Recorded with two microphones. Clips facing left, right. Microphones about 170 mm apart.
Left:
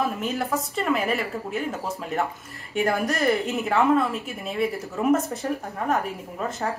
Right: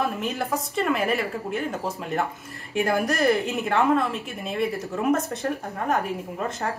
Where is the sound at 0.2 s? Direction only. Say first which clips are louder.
Left 1 dB; centre (ahead or behind).